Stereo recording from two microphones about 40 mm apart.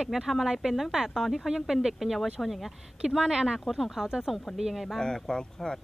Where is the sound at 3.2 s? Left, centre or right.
Centre.